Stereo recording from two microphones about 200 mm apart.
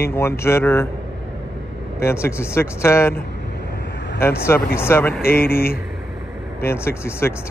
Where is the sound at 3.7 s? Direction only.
60° left (ahead or behind).